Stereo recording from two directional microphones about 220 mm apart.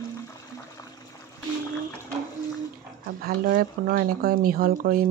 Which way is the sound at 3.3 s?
45° right (ahead or behind).